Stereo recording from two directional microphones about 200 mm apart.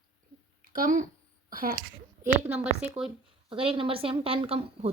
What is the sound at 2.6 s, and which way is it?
Speech, 5° right (ahead or behind).